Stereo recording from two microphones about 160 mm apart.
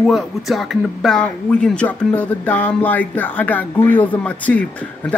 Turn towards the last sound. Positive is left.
turn(degrees=10)  # may be behind; listen again after turning